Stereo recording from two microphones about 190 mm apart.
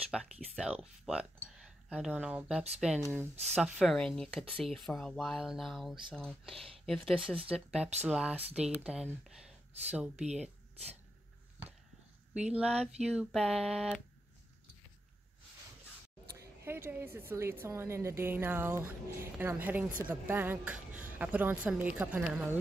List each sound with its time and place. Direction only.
0.1 s speech: 5° right (ahead or behind)
12.4 s speech: 5° right (ahead or behind)
16.6 s a woman's voice: 10° right (ahead or behind)